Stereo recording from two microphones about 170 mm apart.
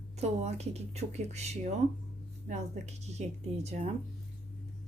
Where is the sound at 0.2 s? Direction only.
40° right (ahead or behind).